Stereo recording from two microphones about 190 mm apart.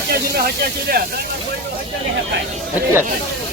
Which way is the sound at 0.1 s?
55° right (ahead or behind).